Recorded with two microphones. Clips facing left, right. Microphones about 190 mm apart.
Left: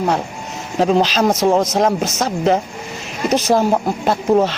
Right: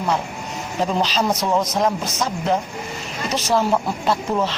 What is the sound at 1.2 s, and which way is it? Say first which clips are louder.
Speech: left 6 dB; 45° left (ahead or behind).